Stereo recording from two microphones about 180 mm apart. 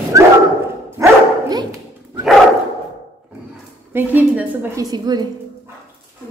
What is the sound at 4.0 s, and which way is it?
A woman's voice, 10° right (ahead or behind).